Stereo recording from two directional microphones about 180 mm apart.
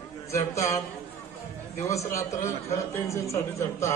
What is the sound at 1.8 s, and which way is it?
A man's voice, 15° left (ahead or behind).